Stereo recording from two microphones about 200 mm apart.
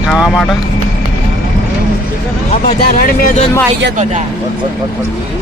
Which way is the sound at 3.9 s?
35° right (ahead or behind).